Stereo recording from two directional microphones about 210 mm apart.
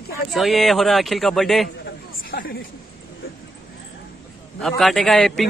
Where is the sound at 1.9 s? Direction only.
45° left (ahead or behind).